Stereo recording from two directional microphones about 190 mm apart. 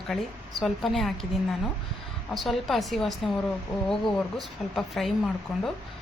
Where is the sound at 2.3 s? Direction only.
Centre (ahead or behind).